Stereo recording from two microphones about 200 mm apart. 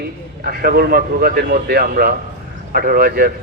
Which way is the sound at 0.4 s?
50° right (ahead or behind).